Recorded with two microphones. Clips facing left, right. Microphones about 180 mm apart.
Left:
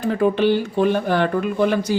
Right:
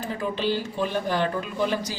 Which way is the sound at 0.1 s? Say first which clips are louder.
Left 10 dB; 60° left (ahead or behind).